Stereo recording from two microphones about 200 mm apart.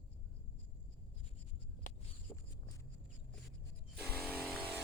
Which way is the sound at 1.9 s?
40° left (ahead or behind).